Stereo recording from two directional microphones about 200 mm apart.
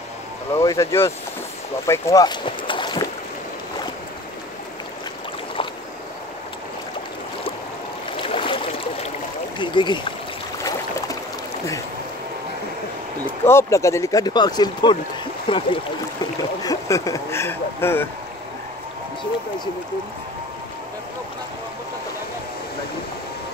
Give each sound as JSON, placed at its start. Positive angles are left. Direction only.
{"t": 0.6, "sound": "speech", "side_deg": 15}
{"t": 8.2, "sound": "a sound", "side_deg": 25}
{"t": 9.6, "sound": "speech", "side_deg": 25}
{"t": 10.6, "sound": "boat", "side_deg": 15}
{"t": 13.5, "sound": "speech", "side_deg": 15}